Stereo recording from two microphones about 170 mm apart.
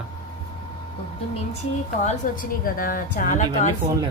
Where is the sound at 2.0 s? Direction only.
50° left (ahead or behind).